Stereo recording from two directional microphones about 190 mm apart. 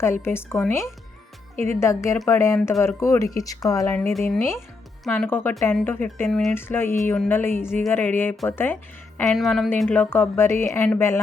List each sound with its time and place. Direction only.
0.0 s speech: 15° left (ahead or behind)
1.7 s speech: 15° left (ahead or behind)